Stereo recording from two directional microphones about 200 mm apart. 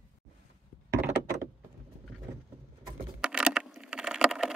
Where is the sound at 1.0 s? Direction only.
15° right (ahead or behind).